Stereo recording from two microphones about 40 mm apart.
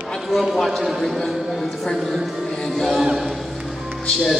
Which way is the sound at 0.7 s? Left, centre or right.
Centre.